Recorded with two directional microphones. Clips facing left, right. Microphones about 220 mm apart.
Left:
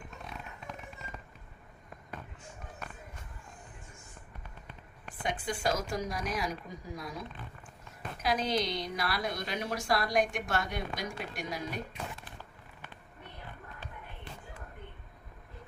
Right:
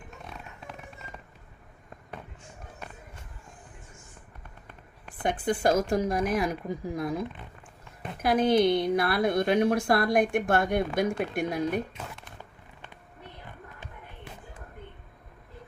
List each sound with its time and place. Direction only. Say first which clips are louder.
5.2 s a woman's voice: right 7 dB; 55° right (ahead or behind)